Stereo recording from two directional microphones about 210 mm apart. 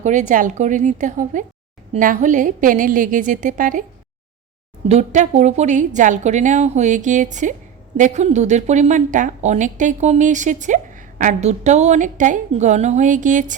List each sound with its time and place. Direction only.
0.0 s a woman's voice: 35° right (ahead or behind)
4.9 s a woman's voice: 35° right (ahead or behind)